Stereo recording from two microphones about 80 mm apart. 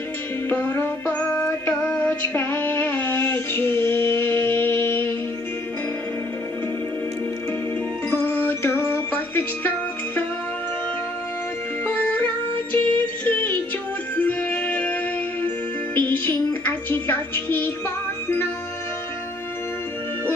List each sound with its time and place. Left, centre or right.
0.5 s synthetic singing: left
8.1 s music: left
11.8 s music: left